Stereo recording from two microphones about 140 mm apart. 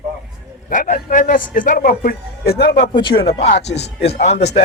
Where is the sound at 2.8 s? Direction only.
35° left (ahead or behind).